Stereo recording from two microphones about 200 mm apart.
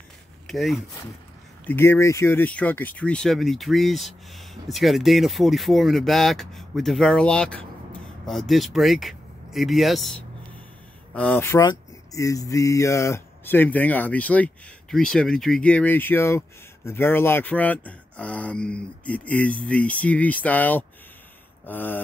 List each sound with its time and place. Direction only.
0.5 s speech: centre (ahead or behind)
1.7 s speech: 10° left (ahead or behind)
11.1 s speech: 10° left (ahead or behind)